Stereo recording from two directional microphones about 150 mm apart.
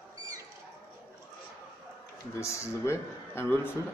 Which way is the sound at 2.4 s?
20° left (ahead or behind).